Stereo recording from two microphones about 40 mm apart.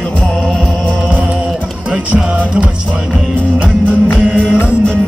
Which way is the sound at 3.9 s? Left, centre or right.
Right.